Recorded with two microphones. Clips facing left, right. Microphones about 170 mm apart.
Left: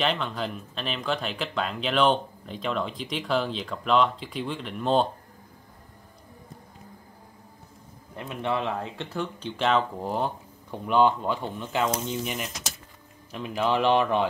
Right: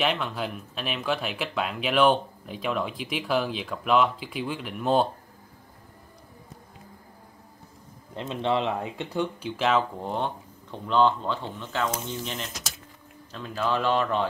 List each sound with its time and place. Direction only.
0.0 s speech: 5° right (ahead or behind)
8.1 s speech: 20° right (ahead or behind)
9.6 s speech: centre (ahead or behind); by 14.2 s 15° left (ahead or behind)